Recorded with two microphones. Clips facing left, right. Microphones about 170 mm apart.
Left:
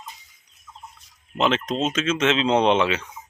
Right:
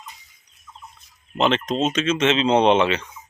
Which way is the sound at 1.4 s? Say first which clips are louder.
Right 2 dB; centre (ahead or behind).